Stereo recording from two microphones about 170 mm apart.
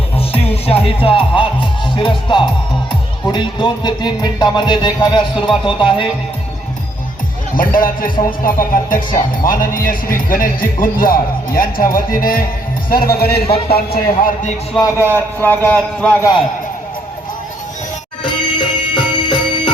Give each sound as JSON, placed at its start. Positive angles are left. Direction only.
{"t": 0.2, "sound": "music", "side_deg": 35}
{"t": 2.9, "sound": "speech", "side_deg": 25}
{"t": 7.5, "sound": "a man's voice", "side_deg": 55}
{"t": 14.7, "sound": "speech", "side_deg": 20}
{"t": 15.1, "sound": "speech", "side_deg": 10}
{"t": 18.2, "sound": "music", "side_deg": 30}